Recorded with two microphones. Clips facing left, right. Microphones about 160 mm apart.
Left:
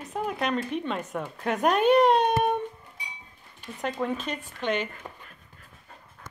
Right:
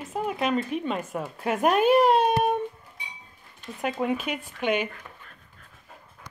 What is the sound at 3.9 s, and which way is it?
Speech, 10° right (ahead or behind).